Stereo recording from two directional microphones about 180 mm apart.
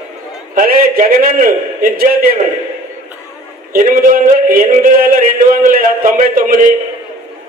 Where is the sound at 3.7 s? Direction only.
45° right (ahead or behind).